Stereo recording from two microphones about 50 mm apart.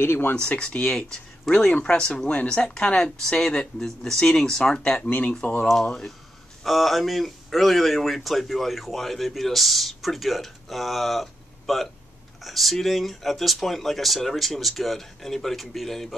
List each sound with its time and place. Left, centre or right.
0.0 s speech: left
0.4 s speech: centre
5.4 s speech: left
5.9 s speech: centre